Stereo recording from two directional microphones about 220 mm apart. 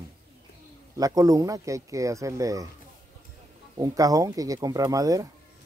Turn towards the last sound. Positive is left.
turn(degrees=-15)  # may be behind; listen again after turning